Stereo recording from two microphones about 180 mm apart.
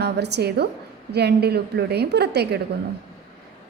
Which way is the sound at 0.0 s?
70° right (ahead or behind).